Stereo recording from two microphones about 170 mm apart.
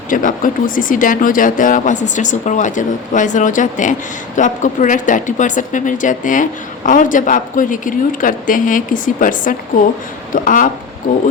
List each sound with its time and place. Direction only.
0.1 s speech: 50° left (ahead or behind)